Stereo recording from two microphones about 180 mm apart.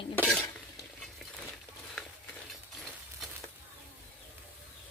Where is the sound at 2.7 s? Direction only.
Centre (ahead or behind).